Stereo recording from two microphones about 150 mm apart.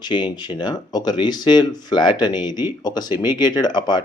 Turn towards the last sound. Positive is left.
turn(degrees=30)  # may be behind; listen again after turning